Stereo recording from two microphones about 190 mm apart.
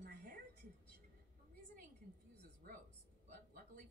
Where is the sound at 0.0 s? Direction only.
60° right (ahead or behind).